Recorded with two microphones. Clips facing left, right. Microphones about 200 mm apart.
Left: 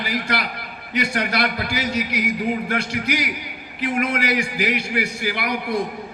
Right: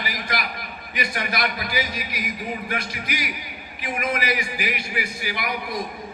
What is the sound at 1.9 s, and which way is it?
Speech, 75° left (ahead or behind).